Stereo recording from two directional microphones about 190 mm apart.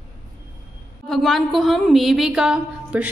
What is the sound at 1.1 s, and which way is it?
A woman's voice, centre (ahead or behind).